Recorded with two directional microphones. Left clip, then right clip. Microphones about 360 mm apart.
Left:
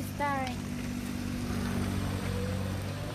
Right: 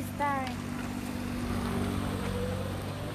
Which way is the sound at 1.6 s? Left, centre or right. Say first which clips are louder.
Right 2 dB; right.